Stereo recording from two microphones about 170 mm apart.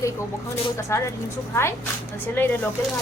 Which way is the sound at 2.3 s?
10° left (ahead or behind).